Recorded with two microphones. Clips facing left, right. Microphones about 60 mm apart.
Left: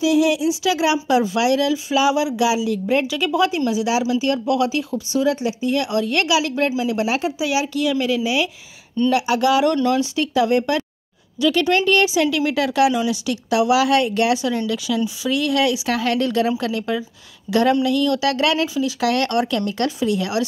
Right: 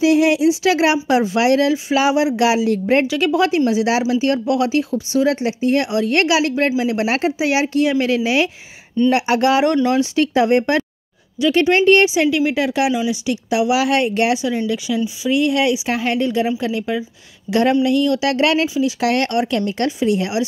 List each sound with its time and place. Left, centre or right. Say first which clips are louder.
0.0 s speech: right 3 dB; right
1.0 s speech: right 2 dB; right
2.3 s speech: right 3 dB; right
3.1 s speech: right 3 dB; right
7.1 s speech: right 3 dB; right
10.1 s speech: right 3 dB; right
14.4 s speech: right 2 dB; centre